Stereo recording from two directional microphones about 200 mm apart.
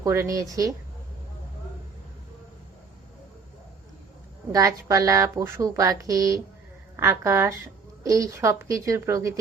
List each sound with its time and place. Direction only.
0.0 s speech: 15° right (ahead or behind)
4.5 s speech: 15° right (ahead or behind)